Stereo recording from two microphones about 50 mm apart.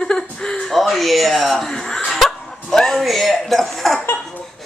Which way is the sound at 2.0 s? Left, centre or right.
Centre.